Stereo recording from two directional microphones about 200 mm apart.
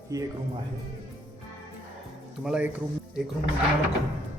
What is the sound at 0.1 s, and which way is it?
Speech, 15° right (ahead or behind).